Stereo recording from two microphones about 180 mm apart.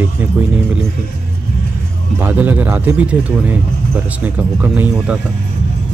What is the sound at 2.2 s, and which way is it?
Speech, 10° right (ahead or behind).